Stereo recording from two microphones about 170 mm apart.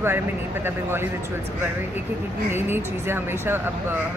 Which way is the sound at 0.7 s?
15° right (ahead or behind).